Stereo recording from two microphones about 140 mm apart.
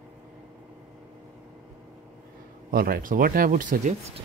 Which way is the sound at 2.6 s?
90° right.